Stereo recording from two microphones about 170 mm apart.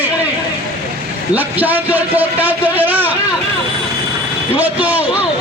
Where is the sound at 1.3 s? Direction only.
10° right (ahead or behind).